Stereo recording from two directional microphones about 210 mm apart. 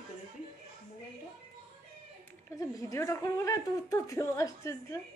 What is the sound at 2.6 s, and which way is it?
A woman's voice, 15° left (ahead or behind).